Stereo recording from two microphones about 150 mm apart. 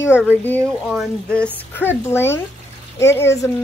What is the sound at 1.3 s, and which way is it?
Speech, 10° left (ahead or behind).